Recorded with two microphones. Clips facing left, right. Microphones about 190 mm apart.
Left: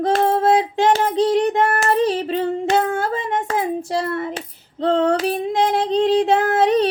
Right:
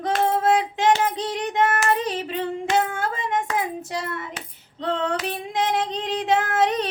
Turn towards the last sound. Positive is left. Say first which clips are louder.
# left 6 dB
turn(degrees=30)  # may be behind; listen again after turning